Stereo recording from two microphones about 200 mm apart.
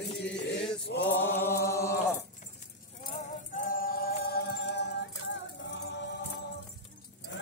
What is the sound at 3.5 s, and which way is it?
Singing, 45° left (ahead or behind).